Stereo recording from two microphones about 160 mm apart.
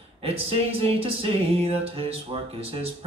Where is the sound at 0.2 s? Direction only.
35° right (ahead or behind).